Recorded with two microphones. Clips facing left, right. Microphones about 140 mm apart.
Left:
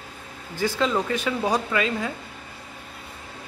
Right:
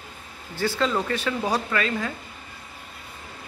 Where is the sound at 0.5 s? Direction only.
15° left (ahead or behind).